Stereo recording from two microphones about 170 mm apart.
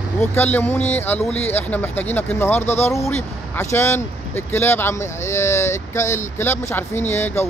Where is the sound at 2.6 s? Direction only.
40° left (ahead or behind).